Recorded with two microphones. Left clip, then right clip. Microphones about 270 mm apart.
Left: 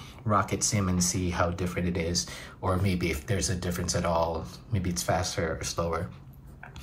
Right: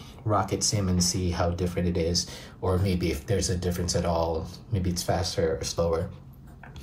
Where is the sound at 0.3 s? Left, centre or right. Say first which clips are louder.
Right 1 dB; centre.